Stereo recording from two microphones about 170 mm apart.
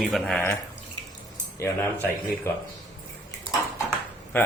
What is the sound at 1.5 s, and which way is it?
Speech, 15° left (ahead or behind).